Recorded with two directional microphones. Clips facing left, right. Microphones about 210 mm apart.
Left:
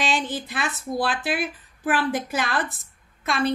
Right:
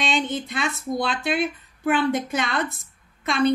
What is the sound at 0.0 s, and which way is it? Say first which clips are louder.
A woman's voice: right 1 dB; 5° left (ahead or behind).